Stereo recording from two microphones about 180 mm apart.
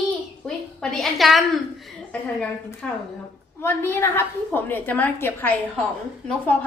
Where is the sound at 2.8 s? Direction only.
5° left (ahead or behind).